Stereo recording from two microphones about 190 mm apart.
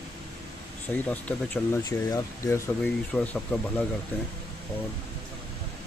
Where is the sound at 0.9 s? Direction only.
10° left (ahead or behind).